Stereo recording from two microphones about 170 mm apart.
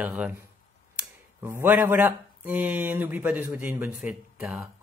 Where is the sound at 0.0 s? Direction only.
10° right (ahead or behind).